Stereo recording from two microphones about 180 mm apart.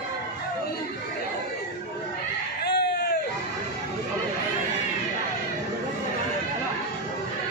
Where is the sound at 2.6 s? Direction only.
70° left (ahead or behind).